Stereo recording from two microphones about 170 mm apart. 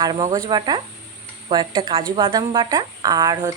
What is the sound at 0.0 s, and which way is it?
Speech, 25° right (ahead or behind).